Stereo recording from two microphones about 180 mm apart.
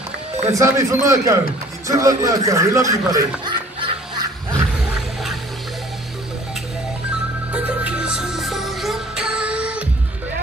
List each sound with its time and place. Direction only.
0.5 s a man's voice: 15° right (ahead or behind)
3.1 s music: 20° right (ahead or behind)
7.5 s music: 5° right (ahead or behind)